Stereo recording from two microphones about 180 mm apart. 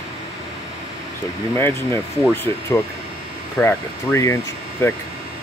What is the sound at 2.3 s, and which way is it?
Speech, 15° left (ahead or behind).